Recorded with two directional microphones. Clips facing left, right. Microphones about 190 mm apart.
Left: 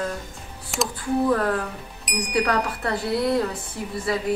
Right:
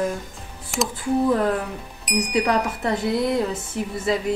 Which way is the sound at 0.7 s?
Centre (ahead or behind).